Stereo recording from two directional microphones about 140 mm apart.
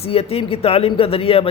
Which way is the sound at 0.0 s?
45° left (ahead or behind).